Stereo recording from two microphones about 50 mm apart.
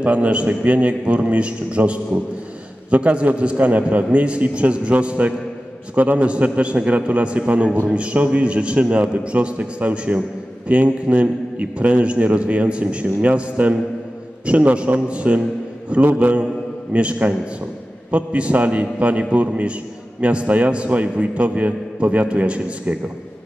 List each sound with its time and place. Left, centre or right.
0.0 s a man's voice: right